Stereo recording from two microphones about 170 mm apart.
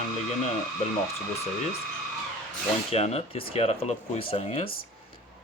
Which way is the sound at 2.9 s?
40° left (ahead or behind).